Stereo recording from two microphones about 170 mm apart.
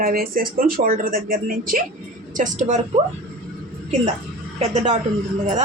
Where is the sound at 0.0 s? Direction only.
60° right (ahead or behind); by 3.0 s 45° right (ahead or behind).